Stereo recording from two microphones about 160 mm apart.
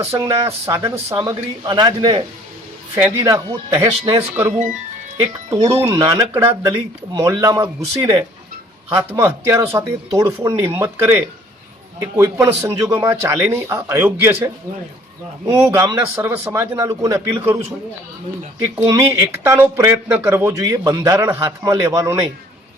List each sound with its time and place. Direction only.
0.2 s speech: 20° right (ahead or behind)
0.8 s speech: 35° right (ahead or behind)
1.1 s speech: 20° right (ahead or behind)
2.9 s speech: 15° right (ahead or behind)
18.8 s speech: 20° right (ahead or behind)